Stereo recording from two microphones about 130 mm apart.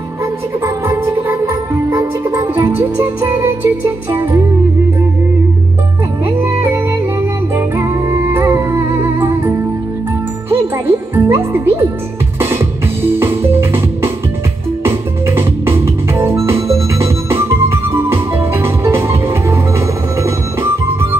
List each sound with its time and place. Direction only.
0.8 s music: 15° right (ahead or behind)
2.7 s music: 15° right (ahead or behind)
3.2 s music: 30° right (ahead or behind)
6.2 s music: 20° right (ahead or behind)
10.5 s jingle: 15° right (ahead or behind)
12.4 s music: 15° right (ahead or behind)